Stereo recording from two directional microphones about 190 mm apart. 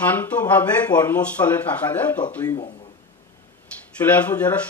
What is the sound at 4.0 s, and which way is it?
Speech, 10° left (ahead or behind).